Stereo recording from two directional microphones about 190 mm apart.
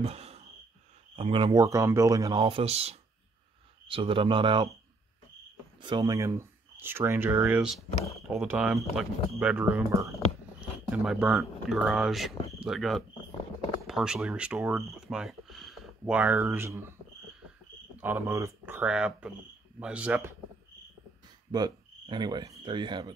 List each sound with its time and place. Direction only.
0.0 s cricket: 35° right (ahead or behind)
1.1 s speech: 30° right (ahead or behind)
2.4 s speech: 30° right (ahead or behind)
5.8 s speech: 25° right (ahead or behind)
18.0 s speech: 10° right (ahead or behind)
21.5 s cricket: 20° right (ahead or behind)